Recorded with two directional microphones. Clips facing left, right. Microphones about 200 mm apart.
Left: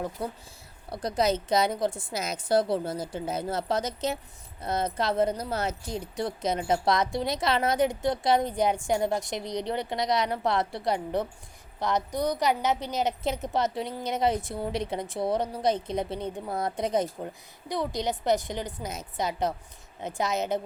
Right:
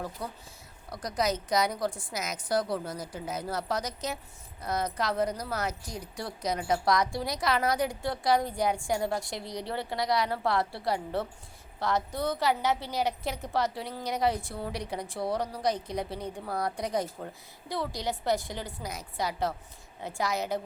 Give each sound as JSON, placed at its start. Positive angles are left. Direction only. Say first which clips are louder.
{"t": 0.2, "sound": "speech", "louder": "left 5 dB", "side_deg": 25}